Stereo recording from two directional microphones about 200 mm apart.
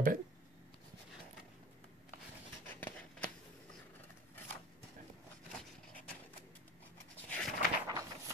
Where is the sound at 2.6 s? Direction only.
10° left (ahead or behind).